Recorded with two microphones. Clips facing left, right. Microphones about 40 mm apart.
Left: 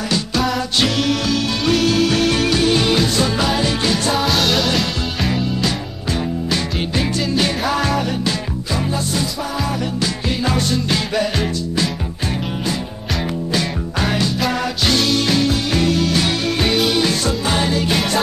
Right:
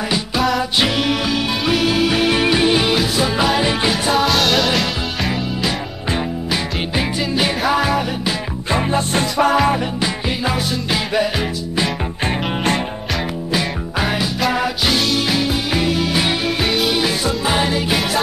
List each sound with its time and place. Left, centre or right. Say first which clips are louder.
0.4 s music: right 3 dB; centre
0.7 s music: even; centre
4.1 s music: right 3 dB; centre
8.7 s music: right 4 dB; right
9.9 s music: even; centre
13.5 s music: even; centre
16.6 s music: left 2 dB; centre